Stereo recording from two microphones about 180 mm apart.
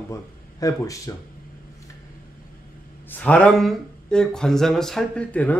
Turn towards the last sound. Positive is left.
turn(degrees=10)  # may be behind; listen again after turning